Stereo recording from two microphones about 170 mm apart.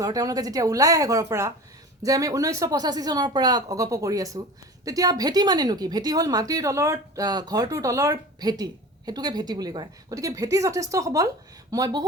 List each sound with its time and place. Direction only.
0.0 s speech: 20° right (ahead or behind)